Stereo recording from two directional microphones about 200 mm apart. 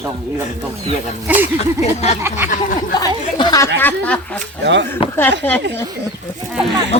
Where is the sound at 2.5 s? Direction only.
45° left (ahead or behind).